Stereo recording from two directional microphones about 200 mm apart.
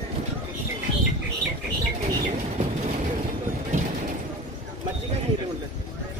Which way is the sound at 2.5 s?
35° right (ahead or behind).